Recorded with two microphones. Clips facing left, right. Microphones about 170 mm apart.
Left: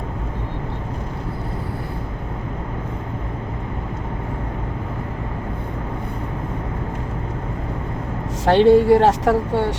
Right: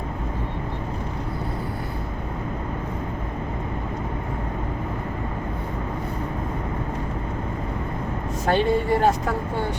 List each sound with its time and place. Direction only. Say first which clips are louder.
8.4 s a woman's voice: left 9 dB; 85° left